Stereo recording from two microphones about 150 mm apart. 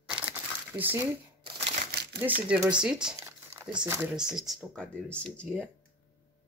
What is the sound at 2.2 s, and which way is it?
Speech, 10° right (ahead or behind).